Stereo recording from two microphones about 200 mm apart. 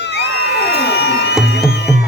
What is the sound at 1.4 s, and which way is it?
Music, 55° left (ahead or behind).